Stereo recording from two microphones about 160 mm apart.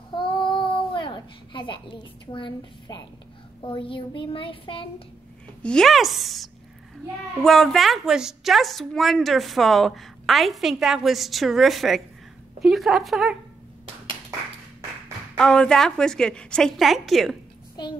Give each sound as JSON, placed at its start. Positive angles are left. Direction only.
{"t": 0.1, "sound": "child singing", "side_deg": 30}
{"t": 3.6, "sound": "a woman's voice", "side_deg": 30}
{"t": 5.6, "sound": "a woman's voice", "side_deg": 5}
{"t": 15.3, "sound": "a woman's voice", "side_deg": 5}
{"t": 17.8, "sound": "a child's voice", "side_deg": 25}